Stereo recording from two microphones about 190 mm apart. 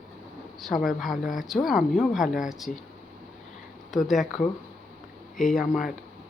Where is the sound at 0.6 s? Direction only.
Centre (ahead or behind).